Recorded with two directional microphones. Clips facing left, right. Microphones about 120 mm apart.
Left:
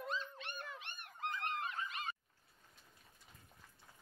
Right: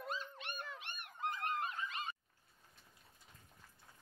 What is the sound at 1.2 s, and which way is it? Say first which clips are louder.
Goose: right 1 dB; 40° right (ahead or behind).